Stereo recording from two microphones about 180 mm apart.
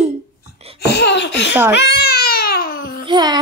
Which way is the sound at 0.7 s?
65° left (ahead or behind).